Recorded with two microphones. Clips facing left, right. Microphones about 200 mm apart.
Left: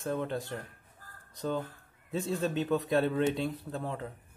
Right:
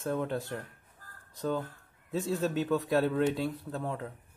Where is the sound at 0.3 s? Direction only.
15° left (ahead or behind).